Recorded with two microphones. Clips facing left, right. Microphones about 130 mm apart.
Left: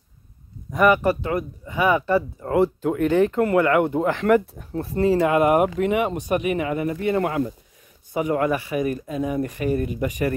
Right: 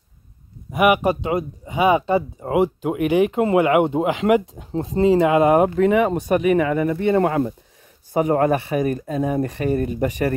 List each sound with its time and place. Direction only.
0.7 s speech: 10° right (ahead or behind); by 10.3 s 35° right (ahead or behind)